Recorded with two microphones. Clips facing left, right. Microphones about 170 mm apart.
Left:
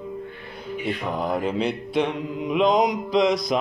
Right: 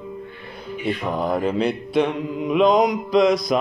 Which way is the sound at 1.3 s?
50° right (ahead or behind).